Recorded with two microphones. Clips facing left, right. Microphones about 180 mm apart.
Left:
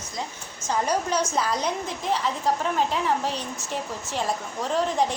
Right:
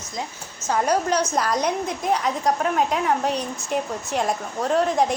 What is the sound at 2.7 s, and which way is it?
Speech, 60° right (ahead or behind).